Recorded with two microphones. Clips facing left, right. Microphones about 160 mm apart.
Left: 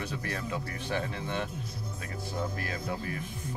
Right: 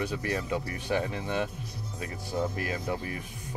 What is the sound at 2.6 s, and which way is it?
Speech, 15° right (ahead or behind).